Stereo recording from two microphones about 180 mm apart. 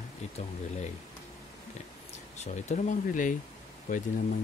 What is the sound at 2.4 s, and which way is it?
Speech, 40° left (ahead or behind).